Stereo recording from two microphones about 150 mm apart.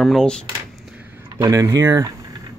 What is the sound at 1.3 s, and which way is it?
Speech, 20° right (ahead or behind).